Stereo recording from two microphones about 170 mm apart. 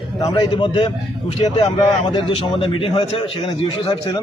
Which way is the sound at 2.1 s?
30° left (ahead or behind).